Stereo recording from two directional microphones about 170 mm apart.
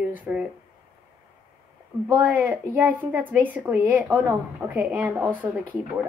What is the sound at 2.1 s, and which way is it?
A woman's voice, 10° right (ahead or behind).